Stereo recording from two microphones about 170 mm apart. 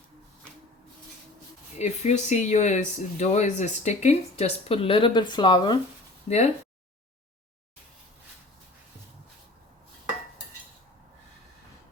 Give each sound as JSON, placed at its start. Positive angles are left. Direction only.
{"t": 1.8, "sound": "speech", "side_deg": 45}
{"t": 6.2, "sound": "speech", "side_deg": 40}